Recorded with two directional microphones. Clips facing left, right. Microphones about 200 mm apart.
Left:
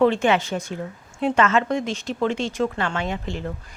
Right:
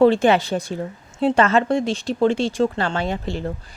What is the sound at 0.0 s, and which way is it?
Speech, 35° right (ahead or behind).